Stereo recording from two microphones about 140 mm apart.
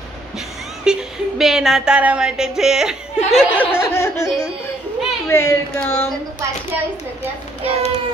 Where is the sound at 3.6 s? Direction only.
15° left (ahead or behind).